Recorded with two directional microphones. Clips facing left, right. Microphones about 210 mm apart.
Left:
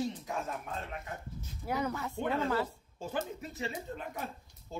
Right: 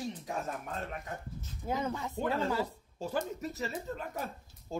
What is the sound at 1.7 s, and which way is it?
Speech, 25° right (ahead or behind).